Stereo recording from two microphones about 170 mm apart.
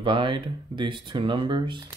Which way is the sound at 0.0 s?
30° right (ahead or behind).